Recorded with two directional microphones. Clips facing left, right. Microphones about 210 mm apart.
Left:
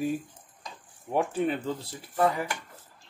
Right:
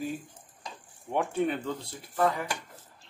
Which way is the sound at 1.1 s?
Centre (ahead or behind).